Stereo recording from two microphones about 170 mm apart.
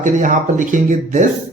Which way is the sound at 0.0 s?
50° right (ahead or behind).